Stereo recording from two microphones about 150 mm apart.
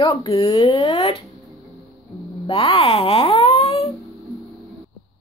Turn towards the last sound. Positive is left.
turn(degrees=40)  # may be behind; listen again after turning